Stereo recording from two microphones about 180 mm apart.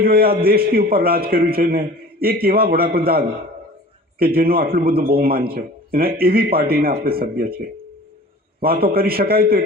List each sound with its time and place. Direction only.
0.0 s a man's voice: 55° right (ahead or behind)
8.6 s a man's voice: 55° right (ahead or behind)